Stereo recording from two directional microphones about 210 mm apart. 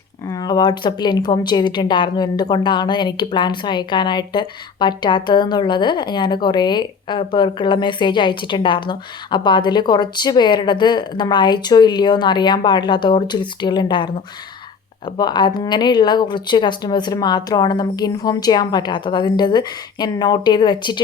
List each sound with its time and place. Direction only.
0.3 s a woman's voice: 20° left (ahead or behind)